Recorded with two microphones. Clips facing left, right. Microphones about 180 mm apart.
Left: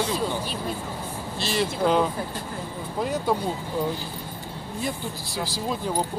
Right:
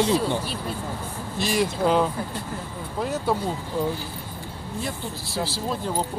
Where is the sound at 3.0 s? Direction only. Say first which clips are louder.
Even; 5° right (ahead or behind).